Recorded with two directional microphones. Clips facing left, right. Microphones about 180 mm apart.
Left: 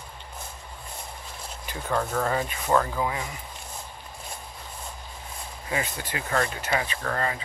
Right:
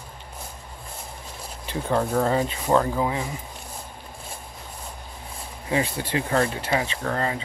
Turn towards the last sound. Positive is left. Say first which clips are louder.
# right 2 dB
turn(degrees=-20)  # may be behind; listen again after turning